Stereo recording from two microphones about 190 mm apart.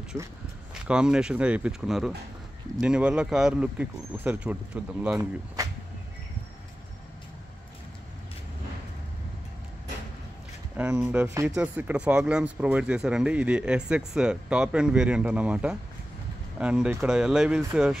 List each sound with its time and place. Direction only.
0.7 s speech: 5° right (ahead or behind)
5.6 s a sound: 20° right (ahead or behind)
10.8 s speech: 10° right (ahead or behind)